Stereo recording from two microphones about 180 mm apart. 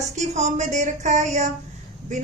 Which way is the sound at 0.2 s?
40° right (ahead or behind).